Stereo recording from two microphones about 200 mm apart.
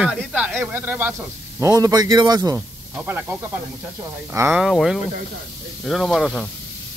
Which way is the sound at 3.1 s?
10° right (ahead or behind).